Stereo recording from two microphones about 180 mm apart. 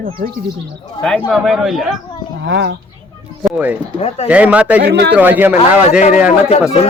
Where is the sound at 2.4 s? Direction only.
80° right.